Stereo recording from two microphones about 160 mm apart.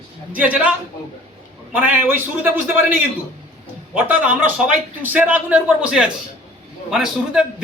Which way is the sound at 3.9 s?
10° right (ahead or behind).